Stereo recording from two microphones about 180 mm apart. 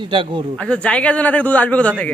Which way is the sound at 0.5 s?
5° left (ahead or behind).